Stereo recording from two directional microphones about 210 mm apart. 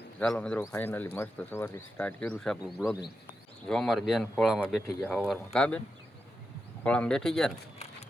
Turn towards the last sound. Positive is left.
turn(degrees=5)  # may be behind; listen again after turning